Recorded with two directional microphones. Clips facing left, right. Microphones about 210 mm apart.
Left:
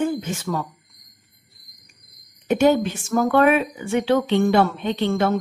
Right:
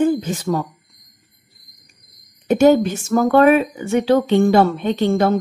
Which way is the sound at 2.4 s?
40° right (ahead or behind).